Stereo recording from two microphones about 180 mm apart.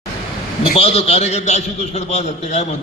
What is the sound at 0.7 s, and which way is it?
A man's voice, 35° left (ahead or behind).